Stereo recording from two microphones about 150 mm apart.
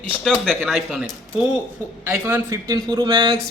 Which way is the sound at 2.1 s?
10° right (ahead or behind).